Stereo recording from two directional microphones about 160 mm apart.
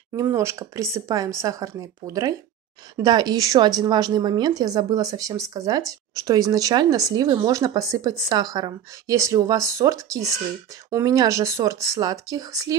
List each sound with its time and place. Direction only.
0.1 s speech: 20° right (ahead or behind)